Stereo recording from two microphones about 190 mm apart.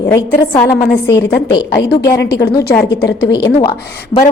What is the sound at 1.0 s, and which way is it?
A woman's voice, 15° left (ahead or behind).